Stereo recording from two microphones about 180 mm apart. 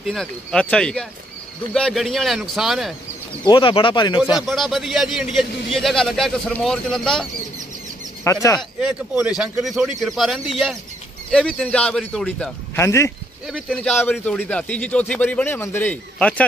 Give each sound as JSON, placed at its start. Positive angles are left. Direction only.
{"t": 0.0, "sound": "a man's voice", "side_deg": 0}
{"t": 3.4, "sound": "speech", "side_deg": 25}
{"t": 4.4, "sound": "a man's voice", "side_deg": 0}
{"t": 8.2, "sound": "speech", "side_deg": 15}
{"t": 9.4, "sound": "a man's voice", "side_deg": 0}
{"t": 12.7, "sound": "a man's voice", "side_deg": 15}
{"t": 13.5, "sound": "a man's voice", "side_deg": 5}